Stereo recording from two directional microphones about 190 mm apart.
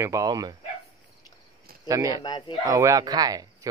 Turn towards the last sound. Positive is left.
turn(degrees=-20)  # may be behind; listen again after turning